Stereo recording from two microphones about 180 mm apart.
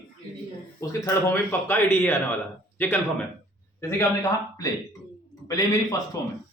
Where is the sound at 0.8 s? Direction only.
15° left (ahead or behind).